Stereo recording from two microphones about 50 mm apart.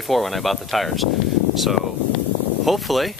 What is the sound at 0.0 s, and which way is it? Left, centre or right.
Speech, centre.